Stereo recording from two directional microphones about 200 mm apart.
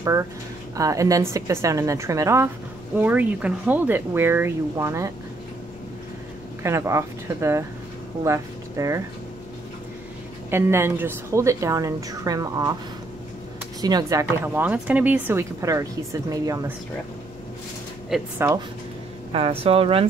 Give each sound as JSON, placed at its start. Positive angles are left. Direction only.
{"t": 0.0, "sound": "a woman's voice", "side_deg": -15}
{"t": 6.6, "sound": "a woman's voice", "side_deg": -15}
{"t": 10.5, "sound": "a woman's voice", "side_deg": -10}
{"t": 13.7, "sound": "a woman's voice", "side_deg": -20}
{"t": 18.1, "sound": "speech", "side_deg": 0}
{"t": 19.6, "sound": "speech", "side_deg": -30}